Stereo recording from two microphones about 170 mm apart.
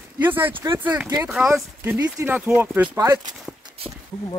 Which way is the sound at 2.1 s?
10° right (ahead or behind).